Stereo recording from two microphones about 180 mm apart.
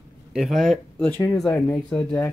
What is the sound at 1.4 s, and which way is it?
Speech, 5° left (ahead or behind).